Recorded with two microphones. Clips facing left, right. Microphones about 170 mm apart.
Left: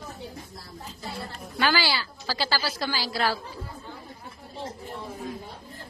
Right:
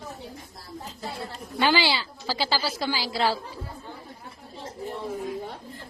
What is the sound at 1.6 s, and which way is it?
A woman's voice, 20° right (ahead or behind).